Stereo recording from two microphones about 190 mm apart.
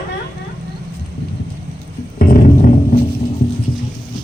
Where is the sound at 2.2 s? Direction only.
45° left (ahead or behind).